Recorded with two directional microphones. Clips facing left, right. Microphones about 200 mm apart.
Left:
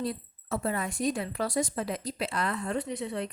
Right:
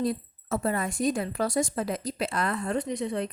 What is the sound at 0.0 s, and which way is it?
A woman's voice, 45° right (ahead or behind).